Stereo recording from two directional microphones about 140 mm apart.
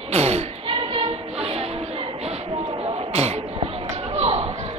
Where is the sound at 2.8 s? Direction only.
50° right (ahead or behind).